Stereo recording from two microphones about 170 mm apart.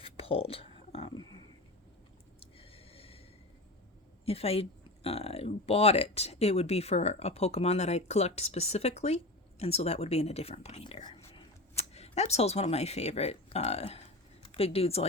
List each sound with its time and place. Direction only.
0.0 s a sound: 35° left (ahead or behind)
2.4 s snort: 35° left (ahead or behind)
4.3 s speech: 35° left (ahead or behind)